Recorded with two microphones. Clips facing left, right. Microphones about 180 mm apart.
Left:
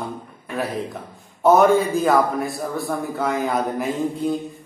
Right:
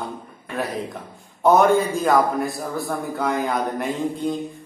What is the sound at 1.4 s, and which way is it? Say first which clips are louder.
A man's voice: left 1 dB; centre (ahead or behind).